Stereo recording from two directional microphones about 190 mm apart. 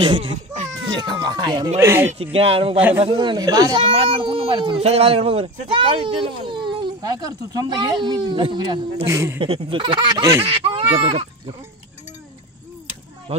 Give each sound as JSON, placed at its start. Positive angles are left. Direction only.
{"t": 0.9, "sound": "speech", "side_deg": -20}
{"t": 2.3, "sound": "speech", "side_deg": -30}
{"t": 9.0, "sound": "speech", "side_deg": -15}
{"t": 9.4, "sound": "speech", "side_deg": -30}
{"t": 13.3, "sound": "speech", "side_deg": -35}